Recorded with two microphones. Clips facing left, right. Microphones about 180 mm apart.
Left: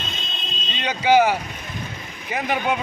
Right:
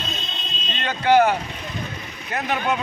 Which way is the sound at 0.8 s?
10° left (ahead or behind).